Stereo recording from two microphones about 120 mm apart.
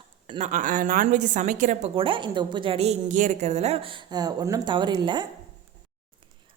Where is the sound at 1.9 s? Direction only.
45° right (ahead or behind); by 3.8 s 65° right (ahead or behind).